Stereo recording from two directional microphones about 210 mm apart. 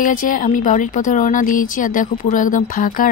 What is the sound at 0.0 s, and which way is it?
A woman's voice, 40° left (ahead or behind).